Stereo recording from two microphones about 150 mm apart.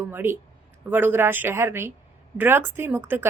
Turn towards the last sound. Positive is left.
turn(degrees=-15)  # may be behind; listen again after turning